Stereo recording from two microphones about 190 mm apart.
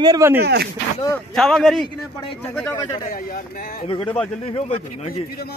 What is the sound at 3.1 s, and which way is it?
Speech, 50° left (ahead or behind).